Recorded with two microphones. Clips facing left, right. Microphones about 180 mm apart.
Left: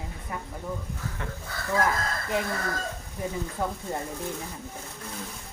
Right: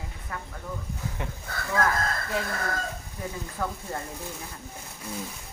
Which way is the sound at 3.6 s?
20° left (ahead or behind).